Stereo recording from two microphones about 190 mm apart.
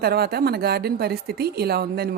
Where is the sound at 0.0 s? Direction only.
55° right (ahead or behind).